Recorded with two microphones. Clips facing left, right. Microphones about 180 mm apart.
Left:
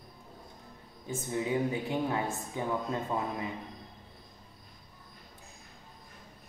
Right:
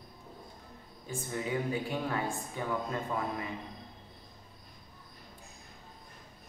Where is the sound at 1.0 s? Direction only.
20° left (ahead or behind).